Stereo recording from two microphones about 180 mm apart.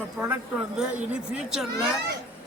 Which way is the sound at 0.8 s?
5° right (ahead or behind).